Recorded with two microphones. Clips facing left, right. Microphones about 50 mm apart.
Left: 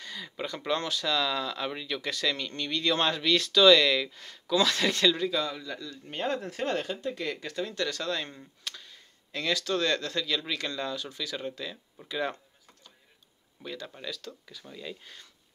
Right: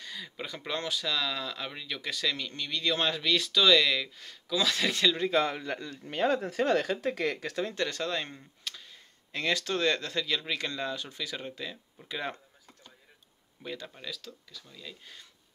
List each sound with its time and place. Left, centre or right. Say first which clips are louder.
0.0 s speech: left 3 dB; centre
5.3 s a man's voice: right 4 dB; right
7.0 s speech: right 3 dB; right
7.7 s speech: even; right
8.4 s a sound: left 1 dB; centre
9.3 s speech: left 1 dB; right
13.6 s speech: even; centre
13.8 s speech: left 3 dB; centre
14.6 s speech: left 9 dB; left